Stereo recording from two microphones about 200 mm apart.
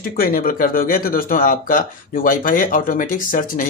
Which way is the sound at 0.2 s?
45° left (ahead or behind).